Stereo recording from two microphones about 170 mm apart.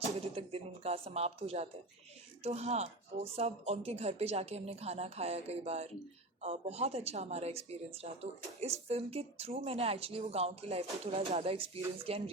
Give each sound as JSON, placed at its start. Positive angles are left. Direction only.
{"t": 0.3, "sound": "a woman's voice", "side_deg": -35}